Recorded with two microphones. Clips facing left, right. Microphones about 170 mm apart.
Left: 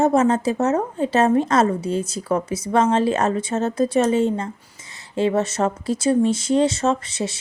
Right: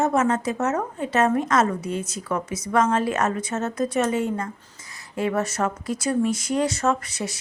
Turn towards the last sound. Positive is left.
turn(degrees=25)  # may be behind; listen again after turning